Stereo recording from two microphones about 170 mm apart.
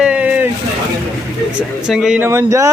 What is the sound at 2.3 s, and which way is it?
Speech, 15° right (ahead or behind).